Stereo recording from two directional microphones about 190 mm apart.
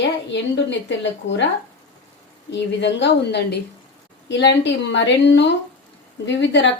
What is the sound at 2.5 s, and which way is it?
A woman's voice, 65° left (ahead or behind).